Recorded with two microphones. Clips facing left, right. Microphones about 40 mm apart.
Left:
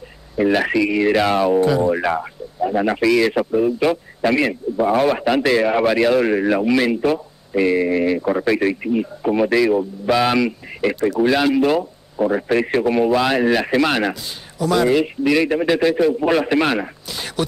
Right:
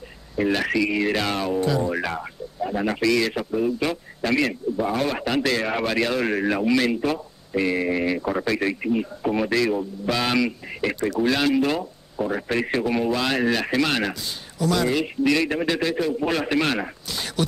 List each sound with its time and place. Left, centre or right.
0.4 s a man's voice: centre
8.5 s a man's voice: centre
8.8 s a man's voice: centre
16.8 s a sound: centre